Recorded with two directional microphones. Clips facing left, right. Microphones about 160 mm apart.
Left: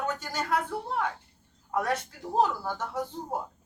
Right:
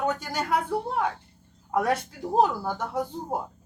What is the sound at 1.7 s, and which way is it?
Speech, 10° right (ahead or behind).